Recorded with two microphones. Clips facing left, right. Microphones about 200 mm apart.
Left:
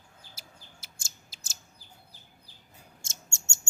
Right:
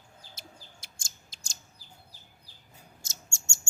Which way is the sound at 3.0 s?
20° left (ahead or behind).